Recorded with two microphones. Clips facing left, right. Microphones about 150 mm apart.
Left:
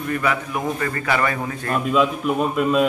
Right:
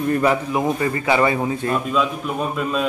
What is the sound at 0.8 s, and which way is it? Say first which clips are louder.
Speech: right 2 dB; 20° right (ahead or behind).